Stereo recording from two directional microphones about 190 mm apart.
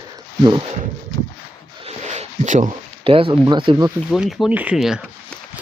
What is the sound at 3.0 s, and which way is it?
Speech, 30° right (ahead or behind).